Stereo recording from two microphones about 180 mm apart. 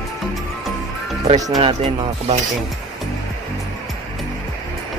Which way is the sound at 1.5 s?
35° right (ahead or behind).